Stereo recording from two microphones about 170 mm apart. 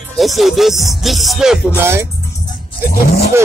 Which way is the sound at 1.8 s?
15° right (ahead or behind).